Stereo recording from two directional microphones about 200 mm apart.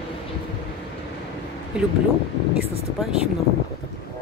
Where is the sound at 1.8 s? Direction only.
5° right (ahead or behind).